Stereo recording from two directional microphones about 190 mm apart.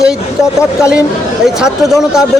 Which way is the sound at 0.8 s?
5° right (ahead or behind).